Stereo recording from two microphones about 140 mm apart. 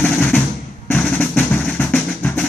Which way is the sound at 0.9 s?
10° left (ahead or behind).